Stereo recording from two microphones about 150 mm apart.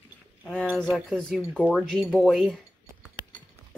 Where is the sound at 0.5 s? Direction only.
5° right (ahead or behind).